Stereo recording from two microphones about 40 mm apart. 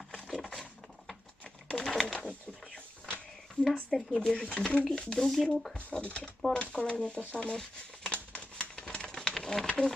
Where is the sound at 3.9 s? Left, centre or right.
Centre.